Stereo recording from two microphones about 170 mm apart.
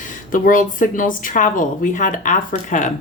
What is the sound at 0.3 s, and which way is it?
A woman's voice, 50° left (ahead or behind).